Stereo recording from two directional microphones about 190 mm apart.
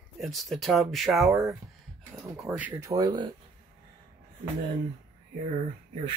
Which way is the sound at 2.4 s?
5° right (ahead or behind).